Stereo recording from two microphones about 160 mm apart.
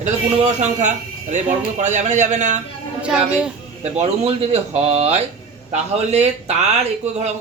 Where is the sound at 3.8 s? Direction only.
40° right (ahead or behind).